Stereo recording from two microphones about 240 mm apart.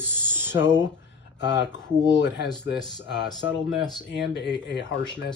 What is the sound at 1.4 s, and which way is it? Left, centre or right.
Speech, left.